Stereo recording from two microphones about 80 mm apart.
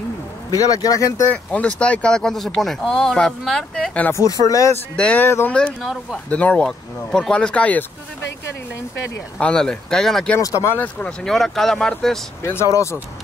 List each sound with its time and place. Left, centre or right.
0.5 s a man's voice: left
1.3 s speech: centre
4.1 s a man's voice: left
4.9 s speech: centre
5.2 s speech: left
5.5 s speech: centre
5.8 s speech: centre
6.3 s speech: centre
9.4 s speech: centre
10.4 s a man's voice: left
10.8 s speech: centre
11.2 s speech: centre